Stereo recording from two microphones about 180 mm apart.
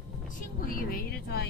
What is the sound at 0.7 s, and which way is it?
Music, 55° left (ahead or behind).